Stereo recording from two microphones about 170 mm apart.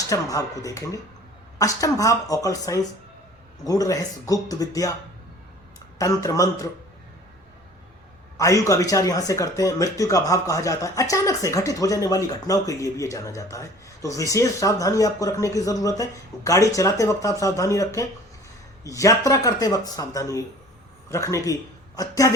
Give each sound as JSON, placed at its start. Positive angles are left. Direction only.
{"t": 0.1, "sound": "speech", "side_deg": 20}
{"t": 6.0, "sound": "speech", "side_deg": 20}
{"t": 8.4, "sound": "speech", "side_deg": 20}